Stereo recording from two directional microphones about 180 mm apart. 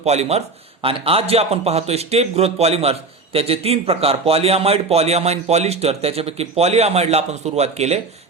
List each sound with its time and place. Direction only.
0.0 s speech: 35° right (ahead or behind)